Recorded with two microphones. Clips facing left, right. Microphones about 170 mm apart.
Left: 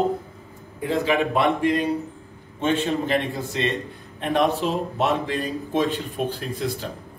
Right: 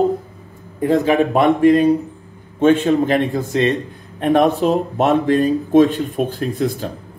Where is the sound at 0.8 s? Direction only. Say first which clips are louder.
Right 7 dB; 45° right (ahead or behind).